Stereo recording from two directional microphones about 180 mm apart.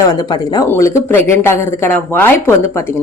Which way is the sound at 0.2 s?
20° left (ahead or behind).